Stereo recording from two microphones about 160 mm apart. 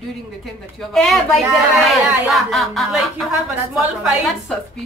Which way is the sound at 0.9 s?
Centre (ahead or behind).